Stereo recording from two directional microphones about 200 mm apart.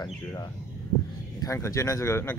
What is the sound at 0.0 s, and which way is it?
A man's voice, 20° left (ahead or behind).